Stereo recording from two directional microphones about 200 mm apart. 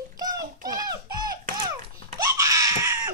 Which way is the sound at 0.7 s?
20° right (ahead or behind).